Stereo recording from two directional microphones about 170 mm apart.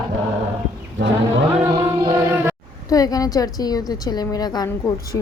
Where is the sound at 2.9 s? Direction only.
20° left (ahead or behind).